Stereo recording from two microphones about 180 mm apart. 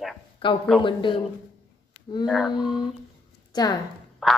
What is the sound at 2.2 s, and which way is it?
Speech, centre (ahead or behind).